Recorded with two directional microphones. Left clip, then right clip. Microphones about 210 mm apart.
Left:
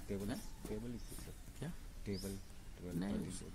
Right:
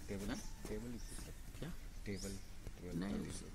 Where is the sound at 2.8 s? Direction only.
50° left (ahead or behind).